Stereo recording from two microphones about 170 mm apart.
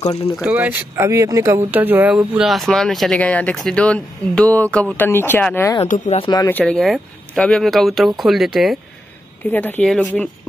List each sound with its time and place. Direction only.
0.0 s speech: 35° left (ahead or behind)
0.4 s speech: 10° right (ahead or behind); by 5.9 s 15° left (ahead or behind)
5.9 s speech: 45° left (ahead or behind)
6.1 s speech: 25° left (ahead or behind)
6.5 s speech: 5° left (ahead or behind)
9.4 s speech: 10° left (ahead or behind)